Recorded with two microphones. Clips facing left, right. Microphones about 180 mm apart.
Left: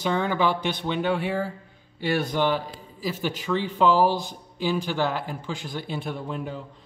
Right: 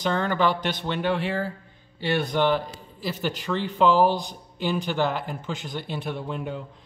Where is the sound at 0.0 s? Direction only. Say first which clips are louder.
Even; 5° left (ahead or behind).